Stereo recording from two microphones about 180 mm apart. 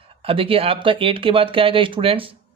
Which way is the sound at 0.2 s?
30° right (ahead or behind).